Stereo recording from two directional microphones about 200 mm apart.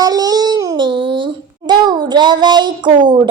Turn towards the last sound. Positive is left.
turn(degrees=-25)  # may be behind; listen again after turning